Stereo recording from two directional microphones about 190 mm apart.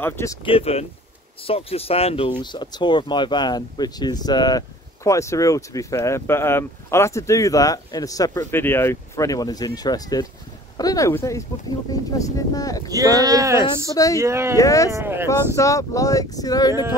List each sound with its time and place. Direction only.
0.0 s speech: 15° left (ahead or behind)
0.5 s speech: 30° left (ahead or behind)
12.9 s speech: 20° right (ahead or behind)
13.8 s speech: 15° left (ahead or behind)
14.2 s speech: 15° right (ahead or behind)
14.6 s speech: 15° left (ahead or behind)
14.9 s speech: 15° right (ahead or behind)
15.2 s speech: 15° left (ahead or behind)